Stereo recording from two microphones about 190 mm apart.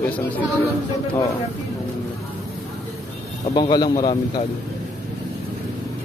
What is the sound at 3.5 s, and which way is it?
Speech, 20° left (ahead or behind).